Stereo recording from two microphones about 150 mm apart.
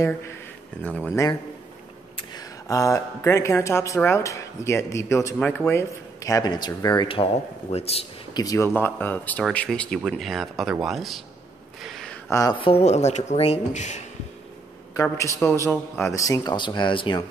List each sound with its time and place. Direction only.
0.8 s speech: 10° left (ahead or behind)
2.1 s speech: 25° left (ahead or behind)
7.7 s a man's voice: 40° left (ahead or behind)
8.4 s speech: 20° left (ahead or behind); by 11.2 s centre (ahead or behind)
11.8 s a sound: centre (ahead or behind)
12.3 s speech: 20° left (ahead or behind)
12.5 s speech: 40° left (ahead or behind)
15.1 s speech: 20° left (ahead or behind)